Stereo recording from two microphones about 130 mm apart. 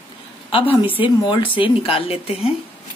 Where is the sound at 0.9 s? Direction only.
40° left (ahead or behind).